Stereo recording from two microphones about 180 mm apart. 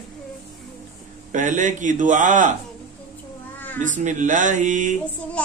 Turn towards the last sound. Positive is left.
turn(degrees=5)  # may be behind; listen again after turning